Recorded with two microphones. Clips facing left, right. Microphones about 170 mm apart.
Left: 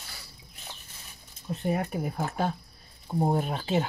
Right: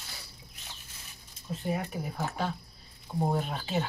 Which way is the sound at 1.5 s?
60° left (ahead or behind).